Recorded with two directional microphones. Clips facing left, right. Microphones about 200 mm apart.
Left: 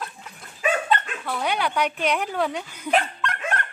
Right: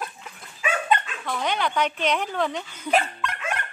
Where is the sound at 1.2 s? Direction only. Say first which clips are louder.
Left 1 dB; 10° left (ahead or behind).